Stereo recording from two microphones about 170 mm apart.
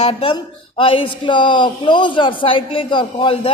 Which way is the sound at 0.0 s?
35° left (ahead or behind).